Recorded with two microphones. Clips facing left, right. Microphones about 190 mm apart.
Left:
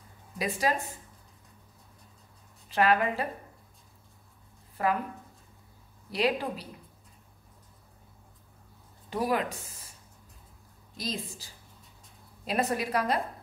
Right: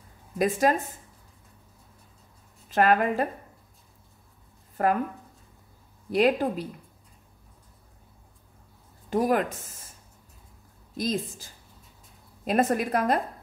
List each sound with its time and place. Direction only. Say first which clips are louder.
0.4 s speech: right 6 dB; 50° right (ahead or behind)
2.7 s speech: right 3 dB; 45° right (ahead or behind)
4.8 s speech: right 4 dB; 50° right (ahead or behind)
6.0 s speech: right 6 dB; 50° right (ahead or behind)
9.1 s speech: right 5 dB; 50° right (ahead or behind)
11.0 s speech: right 7 dB; 50° right (ahead or behind)